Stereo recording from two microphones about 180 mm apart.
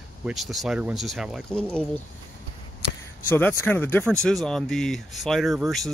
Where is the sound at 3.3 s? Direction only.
10° left (ahead or behind).